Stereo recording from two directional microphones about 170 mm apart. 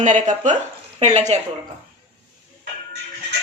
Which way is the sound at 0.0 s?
45° right (ahead or behind).